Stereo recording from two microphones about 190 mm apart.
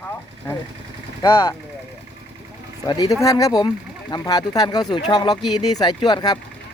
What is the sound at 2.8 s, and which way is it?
Speech, 20° left (ahead or behind).